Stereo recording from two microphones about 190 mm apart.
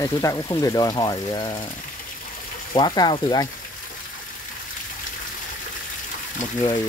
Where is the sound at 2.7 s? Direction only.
20° left (ahead or behind).